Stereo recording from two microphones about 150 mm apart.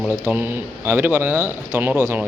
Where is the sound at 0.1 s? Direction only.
10° right (ahead or behind).